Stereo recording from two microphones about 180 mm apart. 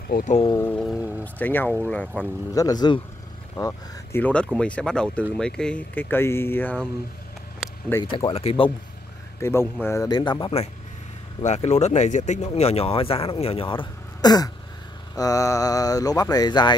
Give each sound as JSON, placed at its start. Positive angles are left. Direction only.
{"t": 0.1, "sound": "speech", "side_deg": 40}
{"t": 0.5, "sound": "speech", "side_deg": 15}
{"t": 2.5, "sound": "speech", "side_deg": 20}
{"t": 7.6, "sound": "a sound", "side_deg": 0}
{"t": 8.0, "sound": "speech", "side_deg": 25}
{"t": 9.4, "sound": "speech", "side_deg": 15}